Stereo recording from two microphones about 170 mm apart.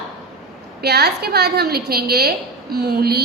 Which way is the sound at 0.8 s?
70° right (ahead or behind).